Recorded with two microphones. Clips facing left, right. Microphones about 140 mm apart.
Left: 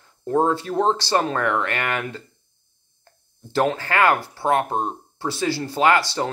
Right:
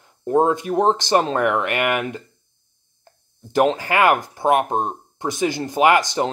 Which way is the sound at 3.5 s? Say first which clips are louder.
Right 3 dB; 15° right (ahead or behind).